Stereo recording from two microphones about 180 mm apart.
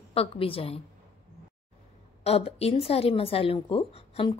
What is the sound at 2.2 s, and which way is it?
Speech, 35° left (ahead or behind).